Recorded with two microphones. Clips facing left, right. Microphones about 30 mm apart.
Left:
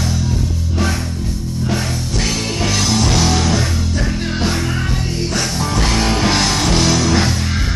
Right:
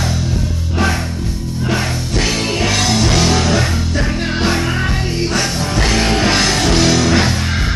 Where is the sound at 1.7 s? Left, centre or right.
Centre.